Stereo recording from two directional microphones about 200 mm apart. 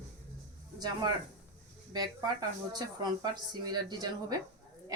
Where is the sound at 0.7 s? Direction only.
20° right (ahead or behind).